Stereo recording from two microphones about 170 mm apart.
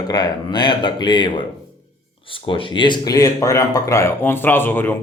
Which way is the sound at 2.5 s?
30° left (ahead or behind).